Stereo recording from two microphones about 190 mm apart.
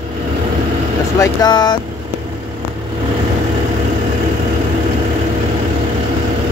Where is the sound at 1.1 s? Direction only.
20° left (ahead or behind).